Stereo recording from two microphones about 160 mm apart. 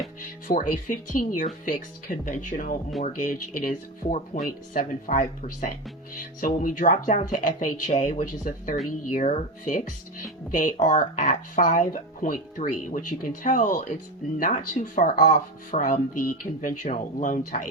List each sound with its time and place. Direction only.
0.4 s speech: 55° left (ahead or behind)